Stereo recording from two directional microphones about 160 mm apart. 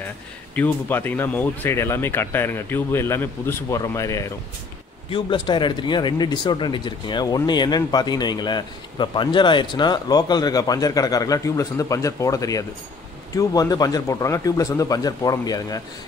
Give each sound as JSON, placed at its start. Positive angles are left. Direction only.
{"t": 0.6, "sound": "speech", "side_deg": 10}
{"t": 5.1, "sound": "speech", "side_deg": 30}